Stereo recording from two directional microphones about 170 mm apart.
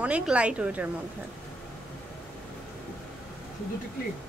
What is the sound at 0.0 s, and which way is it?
Speech, 5° right (ahead or behind).